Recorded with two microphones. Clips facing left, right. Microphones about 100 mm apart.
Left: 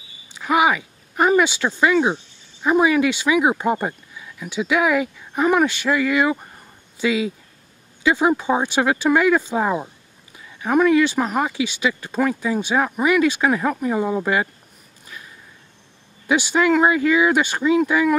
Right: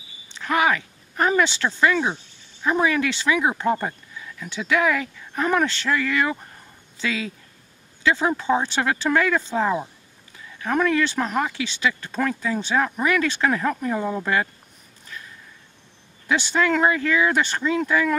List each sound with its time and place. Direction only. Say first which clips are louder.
0.3 s speech: left 3 dB; 10° left (ahead or behind)
16.3 s speech: left 4 dB; 10° left (ahead or behind)